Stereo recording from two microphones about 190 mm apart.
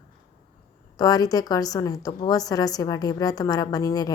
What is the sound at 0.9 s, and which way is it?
A woman's voice, 20° left (ahead or behind).